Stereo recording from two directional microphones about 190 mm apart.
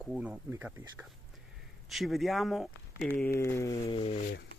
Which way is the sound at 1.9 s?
Centre (ahead or behind).